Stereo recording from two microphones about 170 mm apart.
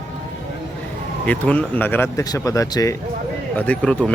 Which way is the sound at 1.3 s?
10° left (ahead or behind).